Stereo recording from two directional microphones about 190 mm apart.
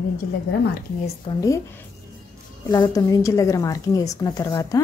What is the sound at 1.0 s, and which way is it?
Speech, 15° left (ahead or behind).